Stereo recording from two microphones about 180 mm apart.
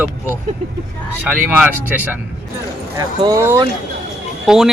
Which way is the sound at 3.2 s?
20° right (ahead or behind).